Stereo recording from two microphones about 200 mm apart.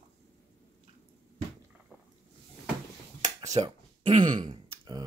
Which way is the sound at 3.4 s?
30° right (ahead or behind).